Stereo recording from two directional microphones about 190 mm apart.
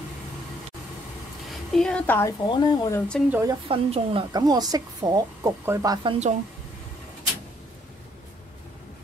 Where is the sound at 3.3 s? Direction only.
15° right (ahead or behind).